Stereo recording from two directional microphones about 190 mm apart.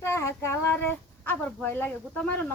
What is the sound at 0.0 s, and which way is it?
Child singing, 15° left (ahead or behind).